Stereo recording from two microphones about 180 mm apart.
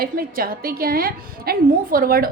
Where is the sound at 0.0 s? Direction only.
55° right (ahead or behind).